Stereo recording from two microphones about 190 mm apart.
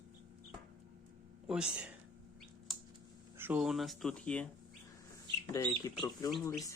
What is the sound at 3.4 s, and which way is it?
Speech, 10° right (ahead or behind).